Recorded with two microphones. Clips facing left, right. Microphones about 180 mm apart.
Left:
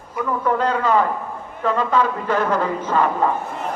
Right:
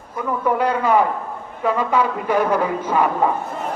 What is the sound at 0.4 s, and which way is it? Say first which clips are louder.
A man's voice: right 1 dB; 10° right (ahead or behind).